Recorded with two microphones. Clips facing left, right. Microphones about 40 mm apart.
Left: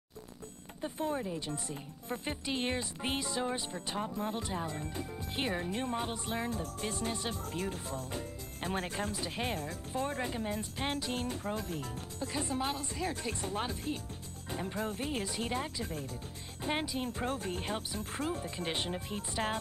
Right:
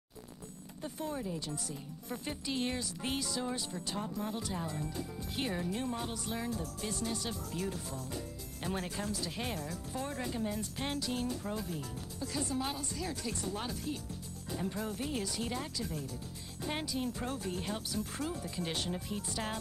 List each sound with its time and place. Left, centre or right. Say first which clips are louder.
0.8 s speech: left 4 dB; left
12.3 s speech: left 1 dB; left
16.6 s speech: left 3 dB; left
17.0 s speech: left 2 dB; left